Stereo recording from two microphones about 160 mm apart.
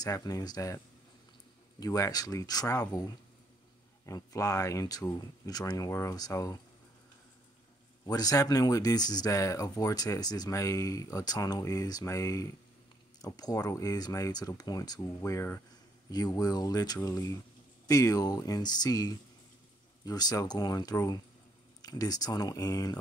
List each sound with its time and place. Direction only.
0.0 s speech: 25° left (ahead or behind)
1.8 s speech: 20° left (ahead or behind)
8.0 s speech: 25° left (ahead or behind)